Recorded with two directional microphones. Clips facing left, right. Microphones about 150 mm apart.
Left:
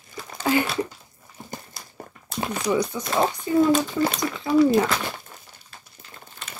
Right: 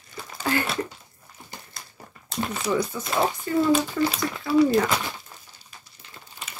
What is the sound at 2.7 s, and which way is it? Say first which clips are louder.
Speech: left 2 dB; 15° left (ahead or behind).